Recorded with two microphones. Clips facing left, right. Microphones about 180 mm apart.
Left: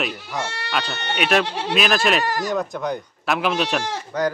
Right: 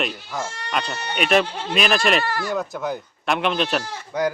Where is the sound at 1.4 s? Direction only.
80° left.